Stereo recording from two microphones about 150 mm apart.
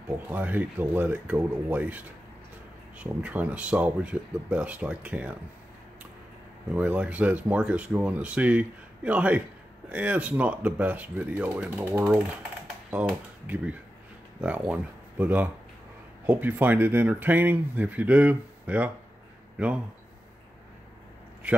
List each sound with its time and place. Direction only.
0.3 s speech: 10° right (ahead or behind)
6.7 s speech: 10° right (ahead or behind)
13.5 s speech: 10° right (ahead or behind)